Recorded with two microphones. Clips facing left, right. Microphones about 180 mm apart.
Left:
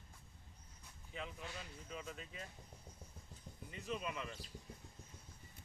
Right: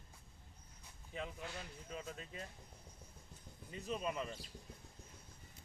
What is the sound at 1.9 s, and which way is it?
Speech, 40° right (ahead or behind).